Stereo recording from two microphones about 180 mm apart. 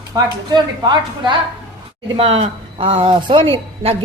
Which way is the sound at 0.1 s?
25° right (ahead or behind).